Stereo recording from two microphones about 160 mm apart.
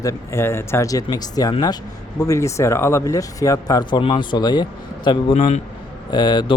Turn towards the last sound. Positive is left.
turn(degrees=30)  # may be behind; listen again after turning